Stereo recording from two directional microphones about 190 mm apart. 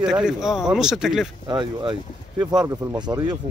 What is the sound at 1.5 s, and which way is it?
Speech, 25° right (ahead or behind).